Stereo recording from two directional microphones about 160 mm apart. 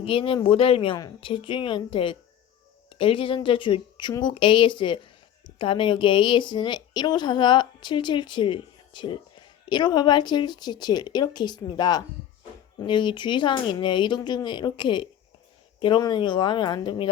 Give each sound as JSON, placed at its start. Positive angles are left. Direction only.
{"t": 0.0, "sound": "a woman's voice", "side_deg": 35}